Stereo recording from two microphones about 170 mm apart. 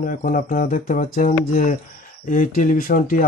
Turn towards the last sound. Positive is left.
turn(degrees=60)  # may be behind; listen again after turning